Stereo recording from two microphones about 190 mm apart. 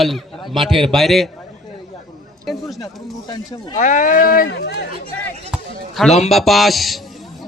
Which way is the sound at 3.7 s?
40° left (ahead or behind).